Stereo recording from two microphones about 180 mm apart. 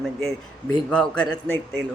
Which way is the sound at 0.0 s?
5° left (ahead or behind).